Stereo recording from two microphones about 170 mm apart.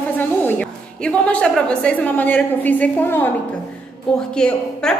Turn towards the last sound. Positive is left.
turn(degrees=5)  # may be behind; listen again after turning